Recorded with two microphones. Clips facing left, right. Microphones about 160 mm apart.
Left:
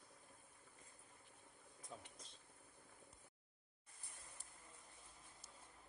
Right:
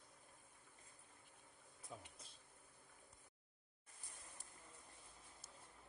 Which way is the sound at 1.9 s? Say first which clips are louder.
Right 1 dB; 10° right (ahead or behind).